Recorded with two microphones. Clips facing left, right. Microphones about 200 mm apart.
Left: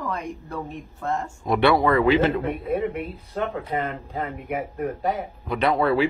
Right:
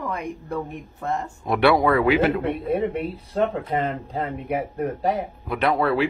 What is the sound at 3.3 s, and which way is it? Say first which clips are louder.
Speech: right 3 dB; 35° right (ahead or behind).